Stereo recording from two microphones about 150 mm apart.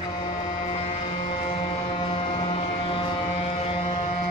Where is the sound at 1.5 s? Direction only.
35° left (ahead or behind).